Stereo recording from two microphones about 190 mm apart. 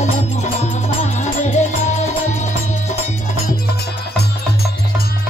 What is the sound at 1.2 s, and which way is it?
Music, 40° left (ahead or behind).